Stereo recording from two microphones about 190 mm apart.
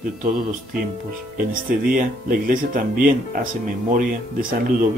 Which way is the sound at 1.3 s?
45° right (ahead or behind).